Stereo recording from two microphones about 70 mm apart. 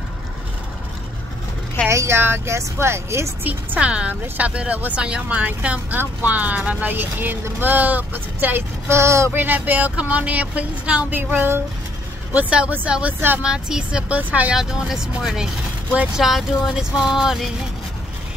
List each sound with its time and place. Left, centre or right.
1.9 s speech: right
3.4 s speech: right
9.3 s speech: right
11.1 s speech: right
14.5 s speech: centre
16.2 s a sound: centre